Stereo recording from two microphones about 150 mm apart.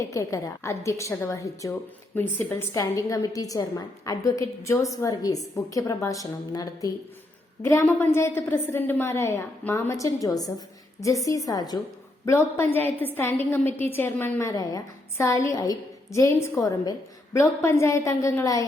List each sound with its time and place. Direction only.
0.0 s a woman's voice: 20° left (ahead or behind)